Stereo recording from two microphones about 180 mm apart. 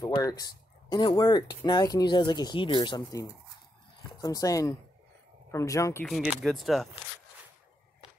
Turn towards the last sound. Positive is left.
turn(degrees=0)  # may be behind; listen again after turning